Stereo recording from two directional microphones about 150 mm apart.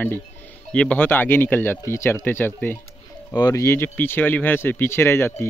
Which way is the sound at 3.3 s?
25° left (ahead or behind).